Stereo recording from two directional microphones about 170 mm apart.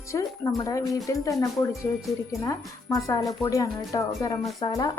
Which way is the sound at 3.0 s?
20° left (ahead or behind).